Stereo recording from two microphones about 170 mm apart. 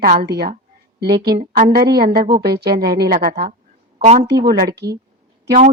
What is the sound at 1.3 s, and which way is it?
Speech, 45° right (ahead or behind).